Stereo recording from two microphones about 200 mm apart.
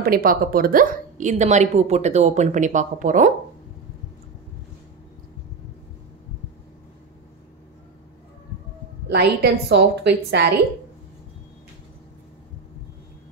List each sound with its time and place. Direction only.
0.0 s a woman's voice: 45° right (ahead or behind)
9.1 s a woman's voice: 55° right (ahead or behind)